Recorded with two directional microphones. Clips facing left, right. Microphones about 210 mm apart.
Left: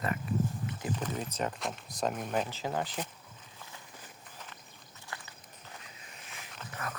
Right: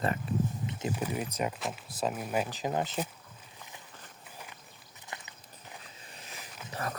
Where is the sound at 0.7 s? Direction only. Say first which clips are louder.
Right 2 dB; 25° right (ahead or behind).